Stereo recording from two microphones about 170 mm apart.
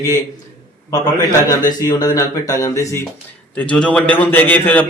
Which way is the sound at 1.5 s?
20° left (ahead or behind).